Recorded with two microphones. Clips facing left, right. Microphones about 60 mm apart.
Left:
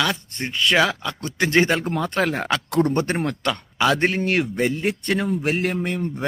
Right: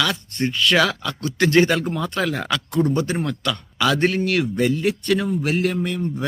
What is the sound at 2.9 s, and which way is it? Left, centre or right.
Speech, left.